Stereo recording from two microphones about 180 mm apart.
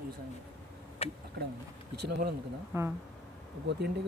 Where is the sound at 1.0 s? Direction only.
35° left (ahead or behind).